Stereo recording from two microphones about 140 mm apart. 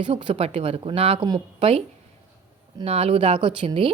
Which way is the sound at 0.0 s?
40° right (ahead or behind).